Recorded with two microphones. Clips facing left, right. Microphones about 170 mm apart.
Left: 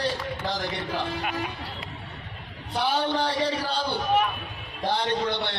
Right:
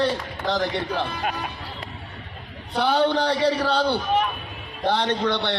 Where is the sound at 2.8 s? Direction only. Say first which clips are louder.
Right 5 dB; 60° right (ahead or behind).